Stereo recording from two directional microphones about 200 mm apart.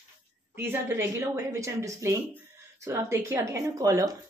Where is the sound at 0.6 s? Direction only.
10° right (ahead or behind).